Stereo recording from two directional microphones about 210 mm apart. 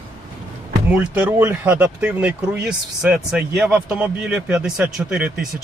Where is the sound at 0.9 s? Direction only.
5° right (ahead or behind).